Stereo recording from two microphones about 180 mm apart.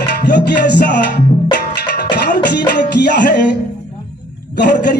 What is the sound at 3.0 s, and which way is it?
Music, 65° left (ahead or behind).